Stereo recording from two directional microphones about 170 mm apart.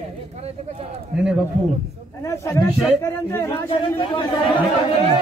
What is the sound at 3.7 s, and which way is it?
Speech, 30° left (ahead or behind).